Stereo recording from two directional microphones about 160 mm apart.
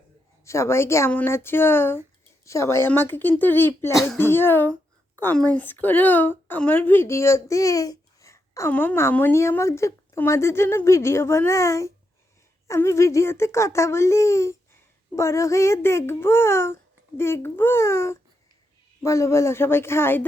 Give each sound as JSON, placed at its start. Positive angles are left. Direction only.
{"t": 0.4, "sound": "a woman's voice", "side_deg": 15}